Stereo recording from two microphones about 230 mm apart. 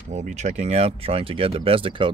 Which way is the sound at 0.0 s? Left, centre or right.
Right.